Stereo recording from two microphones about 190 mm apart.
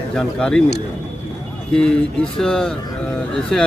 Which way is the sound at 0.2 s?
5° left (ahead or behind).